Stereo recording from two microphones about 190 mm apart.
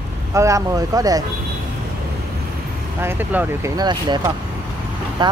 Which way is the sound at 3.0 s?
10° right (ahead or behind).